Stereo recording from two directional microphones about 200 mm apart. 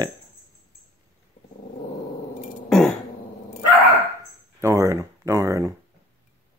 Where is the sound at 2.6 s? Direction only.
Centre (ahead or behind).